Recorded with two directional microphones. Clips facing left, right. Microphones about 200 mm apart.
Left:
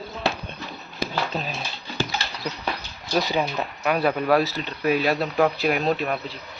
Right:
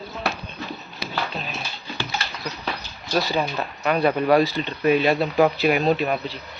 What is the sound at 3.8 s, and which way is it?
Speech, 5° left (ahead or behind).